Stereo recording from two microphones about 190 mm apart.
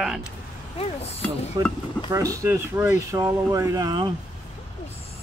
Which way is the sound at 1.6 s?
20° right (ahead or behind).